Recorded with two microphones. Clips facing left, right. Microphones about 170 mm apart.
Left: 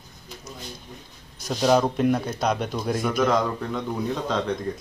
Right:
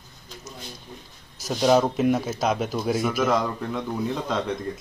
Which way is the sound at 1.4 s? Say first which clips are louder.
Right 1 dB; 5° right (ahead or behind).